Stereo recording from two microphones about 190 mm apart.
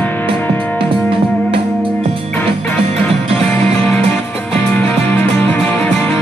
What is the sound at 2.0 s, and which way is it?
Music, 35° right (ahead or behind).